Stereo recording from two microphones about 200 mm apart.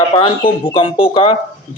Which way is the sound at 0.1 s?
25° left (ahead or behind).